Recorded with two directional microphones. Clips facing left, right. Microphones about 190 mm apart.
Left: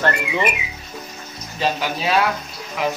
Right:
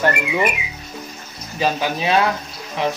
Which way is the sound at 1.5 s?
20° right (ahead or behind).